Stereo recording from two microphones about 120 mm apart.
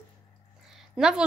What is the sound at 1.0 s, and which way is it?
Speech, 5° right (ahead or behind).